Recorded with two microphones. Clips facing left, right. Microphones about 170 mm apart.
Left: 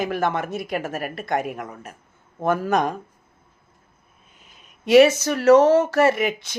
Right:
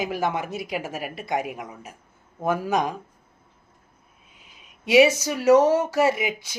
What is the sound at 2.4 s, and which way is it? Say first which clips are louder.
Speech: left 3 dB; 10° right (ahead or behind).